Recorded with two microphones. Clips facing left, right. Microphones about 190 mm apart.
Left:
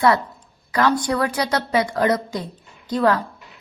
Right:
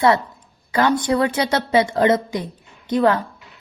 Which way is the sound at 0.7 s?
25° right (ahead or behind).